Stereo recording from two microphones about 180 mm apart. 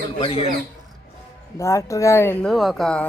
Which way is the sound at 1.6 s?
15° left (ahead or behind).